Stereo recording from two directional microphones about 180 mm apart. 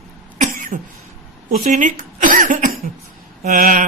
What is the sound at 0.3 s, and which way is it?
Cough, 45° right (ahead or behind).